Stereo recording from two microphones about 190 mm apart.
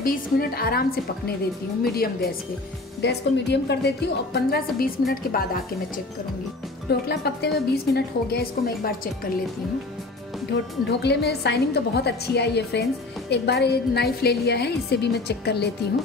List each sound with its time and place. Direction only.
0.0 s a woman's voice: 50° left (ahead or behind)
3.0 s a woman's voice: 65° left (ahead or behind)
6.9 s a woman's voice: 60° left (ahead or behind)
10.9 s a woman's voice: 60° left (ahead or behind)